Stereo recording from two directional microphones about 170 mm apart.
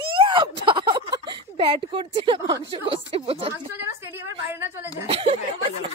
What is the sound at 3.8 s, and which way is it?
A woman's voice, 15° right (ahead or behind).